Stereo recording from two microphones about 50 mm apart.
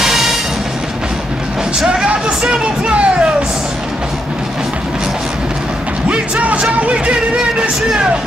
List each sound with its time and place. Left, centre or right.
0.0 s music: centre
2.6 s music: right
6.4 s music: right